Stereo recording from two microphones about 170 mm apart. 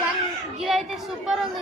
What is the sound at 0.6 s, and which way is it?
Speech, centre (ahead or behind).